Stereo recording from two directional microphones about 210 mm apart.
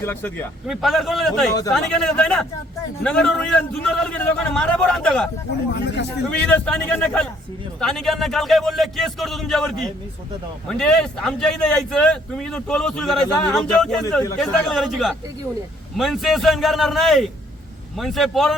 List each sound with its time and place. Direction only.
0.0 s speech: 10° left (ahead or behind)
5.7 s speech: 55° left (ahead or behind)
6.4 s a man's voice: 5° left (ahead or behind)